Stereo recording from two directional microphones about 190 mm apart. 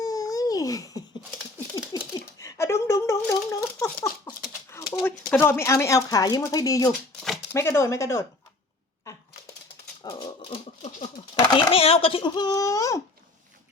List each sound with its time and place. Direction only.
0.0 s babbling: 20° left (ahead or behind)
2.4 s a sound: 15° left (ahead or behind)
4.7 s speech: 10° left (ahead or behind)
10.0 s dog: 20° left (ahead or behind)
10.8 s a sound: 35° left (ahead or behind)
11.4 s a child's voice: 25° left (ahead or behind)